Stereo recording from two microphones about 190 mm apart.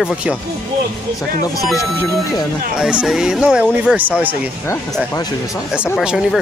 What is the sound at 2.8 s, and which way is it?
Speech, 5° right (ahead or behind).